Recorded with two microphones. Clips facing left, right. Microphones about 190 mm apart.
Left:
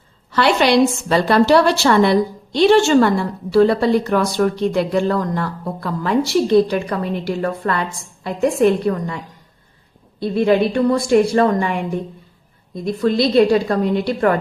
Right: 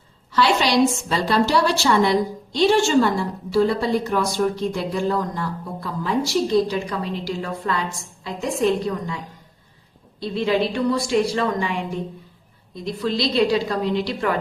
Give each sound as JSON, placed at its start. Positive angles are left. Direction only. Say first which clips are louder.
{"t": 0.3, "sound": "a woman's voice", "louder": "left 4 dB", "side_deg": 60}
{"t": 10.2, "sound": "a woman's voice", "louder": "left 6 dB", "side_deg": 55}